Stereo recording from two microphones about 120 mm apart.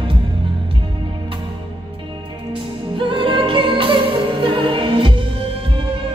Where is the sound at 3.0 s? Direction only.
45° right (ahead or behind).